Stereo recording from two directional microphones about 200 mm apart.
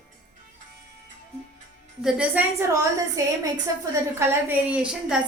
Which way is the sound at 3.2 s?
15° right (ahead or behind).